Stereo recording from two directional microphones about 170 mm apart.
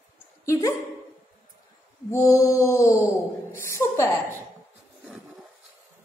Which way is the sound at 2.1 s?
15° left (ahead or behind).